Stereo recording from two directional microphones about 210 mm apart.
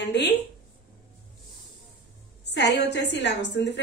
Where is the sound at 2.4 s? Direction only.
55° left (ahead or behind).